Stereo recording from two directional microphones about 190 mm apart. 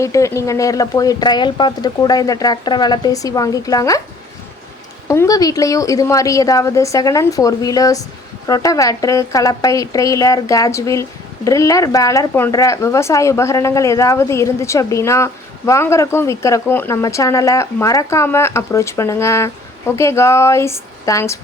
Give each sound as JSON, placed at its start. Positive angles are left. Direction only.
{"t": 0.0, "sound": "speech", "side_deg": 15}
{"t": 5.0, "sound": "speech", "side_deg": 15}